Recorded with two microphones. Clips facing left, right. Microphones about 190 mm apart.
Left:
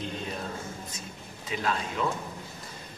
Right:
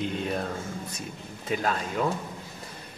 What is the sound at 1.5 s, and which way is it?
Speech, 50° right (ahead or behind).